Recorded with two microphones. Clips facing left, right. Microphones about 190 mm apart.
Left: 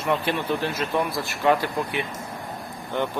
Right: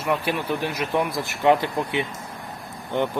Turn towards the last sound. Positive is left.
turn(degrees=-20)  # may be behind; listen again after turning